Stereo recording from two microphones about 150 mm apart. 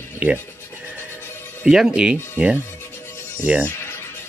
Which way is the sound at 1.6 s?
5° right (ahead or behind).